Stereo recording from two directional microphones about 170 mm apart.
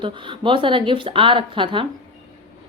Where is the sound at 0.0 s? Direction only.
30° right (ahead or behind).